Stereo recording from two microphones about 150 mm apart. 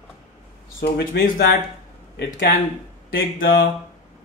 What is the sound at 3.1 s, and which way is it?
Speech, 80° left.